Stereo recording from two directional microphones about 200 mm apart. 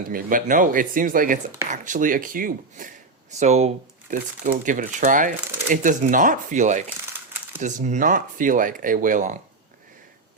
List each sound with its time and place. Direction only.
0.1 s speech: 45° right (ahead or behind)